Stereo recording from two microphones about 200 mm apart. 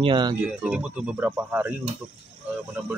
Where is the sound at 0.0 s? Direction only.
25° right (ahead or behind).